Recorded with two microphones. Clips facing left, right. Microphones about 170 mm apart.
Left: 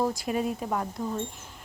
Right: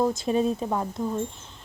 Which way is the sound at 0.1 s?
25° right (ahead or behind).